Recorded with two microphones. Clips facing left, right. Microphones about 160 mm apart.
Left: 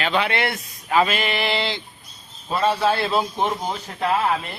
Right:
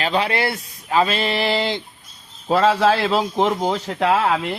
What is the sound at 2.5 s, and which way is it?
Speech, 90° right.